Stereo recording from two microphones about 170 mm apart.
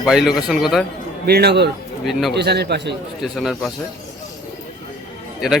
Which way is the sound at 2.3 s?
80° right.